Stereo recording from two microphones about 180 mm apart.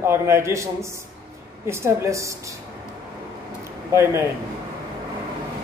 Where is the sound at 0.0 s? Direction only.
15° right (ahead or behind).